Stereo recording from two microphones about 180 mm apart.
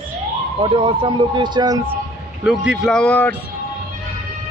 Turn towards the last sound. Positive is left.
turn(degrees=10)  # may be behind; listen again after turning